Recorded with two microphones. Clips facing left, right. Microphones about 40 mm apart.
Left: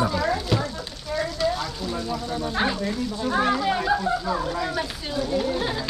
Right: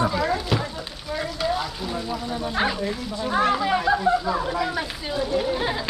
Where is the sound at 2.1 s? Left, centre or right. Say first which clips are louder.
Right 1 dB; centre.